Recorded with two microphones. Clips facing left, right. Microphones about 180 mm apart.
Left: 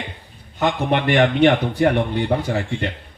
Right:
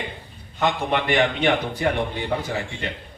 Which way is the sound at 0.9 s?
55° left (ahead or behind).